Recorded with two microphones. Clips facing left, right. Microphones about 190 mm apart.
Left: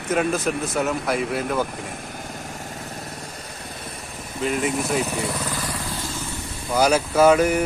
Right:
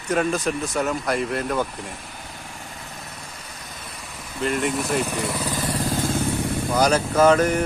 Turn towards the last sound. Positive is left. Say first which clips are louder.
# left 1 dB
turn(degrees=10)  # may be behind; listen again after turning